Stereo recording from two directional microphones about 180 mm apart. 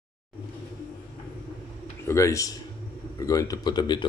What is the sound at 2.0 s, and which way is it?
Speech, 15° left (ahead or behind).